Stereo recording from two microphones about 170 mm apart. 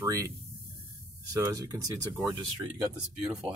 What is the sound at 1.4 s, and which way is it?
Speech, 20° right (ahead or behind).